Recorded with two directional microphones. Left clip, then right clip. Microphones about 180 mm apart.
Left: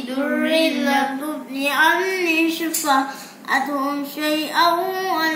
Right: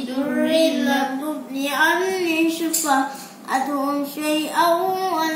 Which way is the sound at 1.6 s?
Centre (ahead or behind).